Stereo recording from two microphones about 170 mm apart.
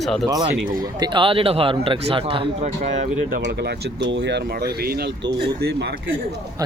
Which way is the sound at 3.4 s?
80° right.